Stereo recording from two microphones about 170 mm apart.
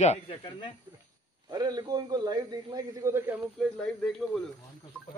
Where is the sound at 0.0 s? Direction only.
40° left (ahead or behind).